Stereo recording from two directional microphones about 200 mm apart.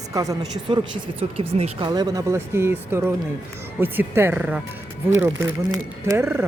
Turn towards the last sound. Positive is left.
turn(degrees=-10)  # may be behind; listen again after turning